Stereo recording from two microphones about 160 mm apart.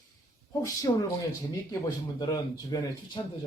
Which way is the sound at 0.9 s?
30° left (ahead or behind).